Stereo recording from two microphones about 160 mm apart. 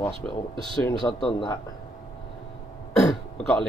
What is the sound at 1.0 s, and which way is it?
Speech, 25° left (ahead or behind).